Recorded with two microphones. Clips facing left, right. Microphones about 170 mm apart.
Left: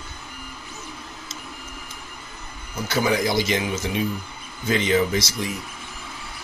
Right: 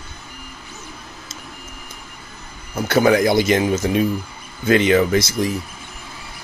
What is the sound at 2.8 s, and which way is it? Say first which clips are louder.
Speech: right 7 dB; 55° right (ahead or behind).